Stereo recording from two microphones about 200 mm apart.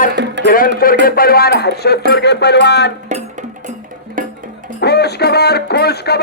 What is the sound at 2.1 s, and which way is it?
Speech, 55° left (ahead or behind).